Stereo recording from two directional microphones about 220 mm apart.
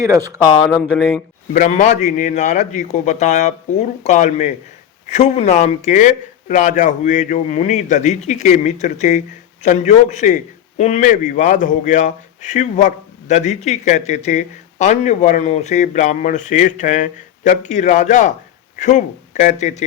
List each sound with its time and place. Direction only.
0.0 s speech: 15° right (ahead or behind)
0.7 s speech: centre (ahead or behind)
1.5 s a man's voice: 35° left (ahead or behind)